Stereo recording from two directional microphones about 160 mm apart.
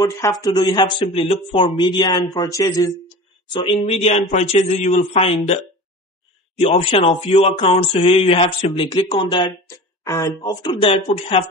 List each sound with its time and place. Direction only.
0.2 s speech: 20° left (ahead or behind)
3.5 s speech: 35° left (ahead or behind)
6.6 s speech: 40° left (ahead or behind)